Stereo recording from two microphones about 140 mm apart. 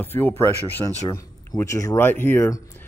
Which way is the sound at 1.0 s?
25° left (ahead or behind).